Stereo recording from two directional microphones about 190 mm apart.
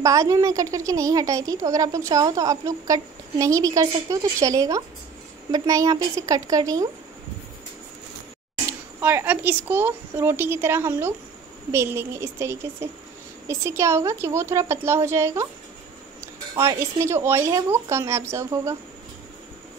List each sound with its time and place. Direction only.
0.0 s speech: 15° right (ahead or behind)
9.0 s speech: 10° right (ahead or behind)
16.5 s speech: 15° right (ahead or behind)